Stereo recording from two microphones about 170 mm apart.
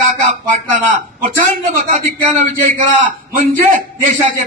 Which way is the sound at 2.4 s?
50° right (ahead or behind).